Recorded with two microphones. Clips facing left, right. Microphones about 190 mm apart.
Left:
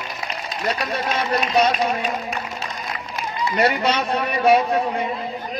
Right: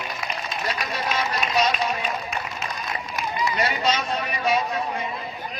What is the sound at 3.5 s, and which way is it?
A man's voice, 65° left (ahead or behind).